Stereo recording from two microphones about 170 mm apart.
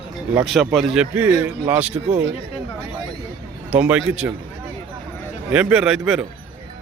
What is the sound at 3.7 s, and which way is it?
Speech, 10° right (ahead or behind).